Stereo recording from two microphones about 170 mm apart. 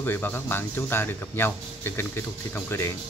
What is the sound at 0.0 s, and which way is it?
Speech, 10° left (ahead or behind).